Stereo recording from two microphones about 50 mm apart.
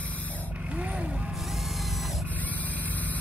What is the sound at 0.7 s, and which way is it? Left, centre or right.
Vehicle, right.